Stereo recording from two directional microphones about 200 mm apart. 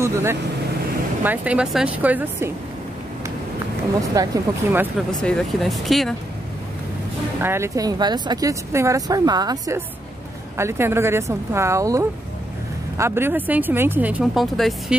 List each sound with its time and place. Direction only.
0.0 s speech: 15° right (ahead or behind)
4.1 s speech: 20° right (ahead or behind)
5.2 s speech: centre (ahead or behind)
7.4 s speech: 15° right (ahead or behind)